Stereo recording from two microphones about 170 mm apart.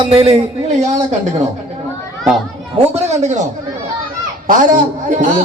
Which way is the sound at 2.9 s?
45° right (ahead or behind).